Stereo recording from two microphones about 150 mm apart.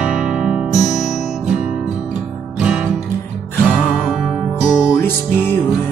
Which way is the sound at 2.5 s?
5° right (ahead or behind).